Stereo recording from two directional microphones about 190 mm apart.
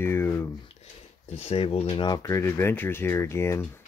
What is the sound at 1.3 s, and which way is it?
Speech, 30° left (ahead or behind).